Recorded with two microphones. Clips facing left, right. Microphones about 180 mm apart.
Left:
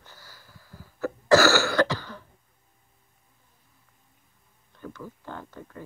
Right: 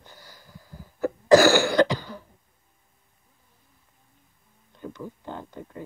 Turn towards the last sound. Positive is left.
turn(degrees=-20)  # may be behind; listen again after turning